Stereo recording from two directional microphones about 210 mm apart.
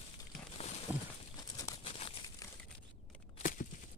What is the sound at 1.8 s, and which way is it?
Crumpling, 25° left (ahead or behind).